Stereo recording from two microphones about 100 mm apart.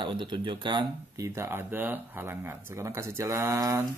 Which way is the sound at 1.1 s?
30° right (ahead or behind).